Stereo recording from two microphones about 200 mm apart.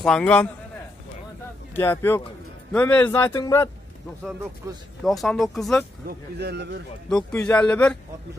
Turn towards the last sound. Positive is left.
turn(degrees=5)  # may be behind; listen again after turning